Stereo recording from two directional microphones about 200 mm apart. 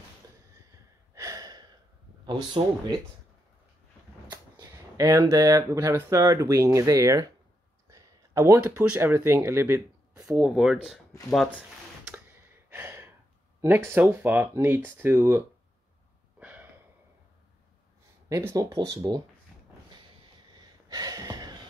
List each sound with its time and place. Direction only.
1.1 s gasp: 15° right (ahead or behind)
2.2 s speech: 25° right (ahead or behind)
4.3 s speech: 20° right (ahead or behind); by 11.6 s centre (ahead or behind)
12.6 s gasp: 10° right (ahead or behind)
13.6 s speech: 10° right (ahead or behind)
16.3 s a sound: 10° right (ahead or behind)
18.3 s speech: 15° right (ahead or behind)
20.5 s gasp: 20° right (ahead or behind)